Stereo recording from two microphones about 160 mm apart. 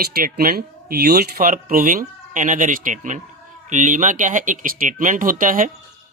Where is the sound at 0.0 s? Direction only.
65° right (ahead or behind).